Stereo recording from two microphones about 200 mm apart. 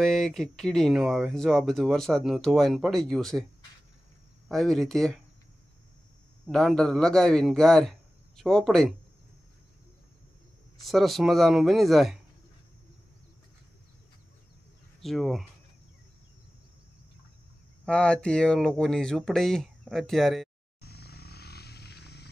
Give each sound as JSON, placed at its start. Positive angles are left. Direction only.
{"t": 0.0, "sound": "speech", "side_deg": 0}
{"t": 4.5, "sound": "speech", "side_deg": 0}
{"t": 6.4, "sound": "speech", "side_deg": 5}
{"t": 10.8, "sound": "speech", "side_deg": 0}
{"t": 15.0, "sound": "speech", "side_deg": 0}
{"t": 17.8, "sound": "speech", "side_deg": 5}
{"t": 20.8, "sound": "vehicle", "side_deg": 55}